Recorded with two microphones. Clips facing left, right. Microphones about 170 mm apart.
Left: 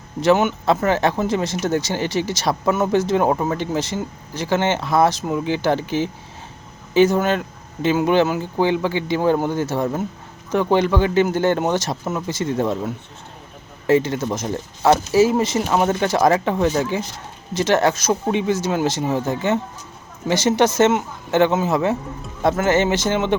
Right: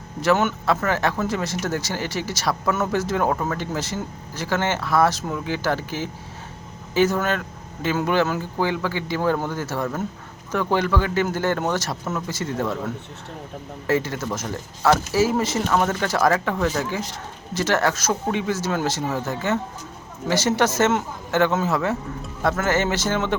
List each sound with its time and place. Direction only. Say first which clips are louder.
0.2 s speech: left 4 dB; 15° left (ahead or behind)